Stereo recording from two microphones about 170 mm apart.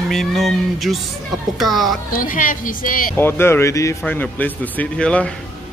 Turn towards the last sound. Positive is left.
turn(degrees=5)  # may be behind; listen again after turning